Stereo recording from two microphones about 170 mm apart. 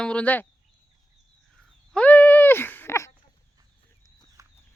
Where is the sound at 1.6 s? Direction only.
5° left (ahead or behind).